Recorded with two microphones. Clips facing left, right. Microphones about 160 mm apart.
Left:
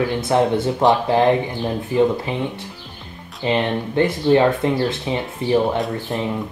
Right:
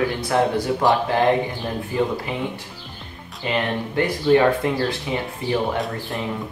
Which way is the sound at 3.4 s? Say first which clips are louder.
Left 4 dB; 25° left (ahead or behind).